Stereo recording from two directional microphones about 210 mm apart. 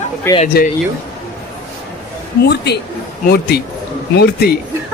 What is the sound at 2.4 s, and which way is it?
Speech, 50° left (ahead or behind).